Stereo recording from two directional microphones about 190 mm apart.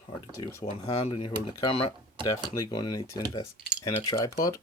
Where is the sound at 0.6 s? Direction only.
30° left (ahead or behind).